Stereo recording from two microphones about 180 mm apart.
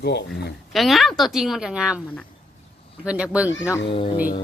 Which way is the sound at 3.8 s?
30° left (ahead or behind).